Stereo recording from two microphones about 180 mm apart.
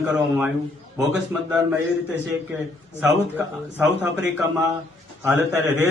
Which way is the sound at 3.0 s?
5° right (ahead or behind).